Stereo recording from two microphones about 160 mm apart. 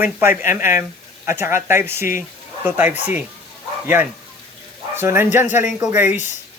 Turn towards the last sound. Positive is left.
turn(degrees=-15)  # may be behind; listen again after turning